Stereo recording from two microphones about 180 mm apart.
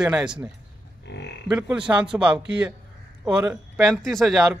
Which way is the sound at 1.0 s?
75° left (ahead or behind).